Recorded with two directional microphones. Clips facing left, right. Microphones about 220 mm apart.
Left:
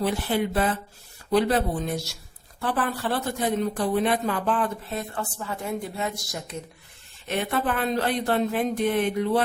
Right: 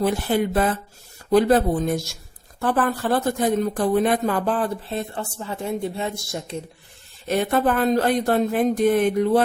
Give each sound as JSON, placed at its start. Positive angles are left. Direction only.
{"t": 0.0, "sound": "speech", "side_deg": -45}
{"t": 7.3, "sound": "speech", "side_deg": -40}